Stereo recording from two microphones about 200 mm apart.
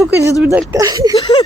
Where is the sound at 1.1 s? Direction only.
30° left (ahead or behind).